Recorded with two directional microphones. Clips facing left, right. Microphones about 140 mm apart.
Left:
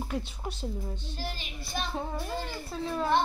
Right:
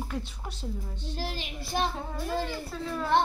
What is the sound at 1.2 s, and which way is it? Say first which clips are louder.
Speech: right 3 dB; 90° right.